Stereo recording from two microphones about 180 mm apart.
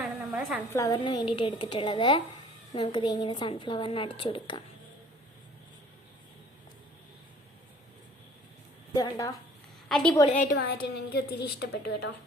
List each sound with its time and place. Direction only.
0.0 s a sound: 5° right (ahead or behind)
0.7 s a woman's voice: 15° left (ahead or behind)
0.9 s speech: 30° left (ahead or behind)
8.9 s a woman's voice: 20° left (ahead or behind)
9.9 s a woman's voice: 5° left (ahead or behind)
10.5 s a woman's voice: 60° left (ahead or behind)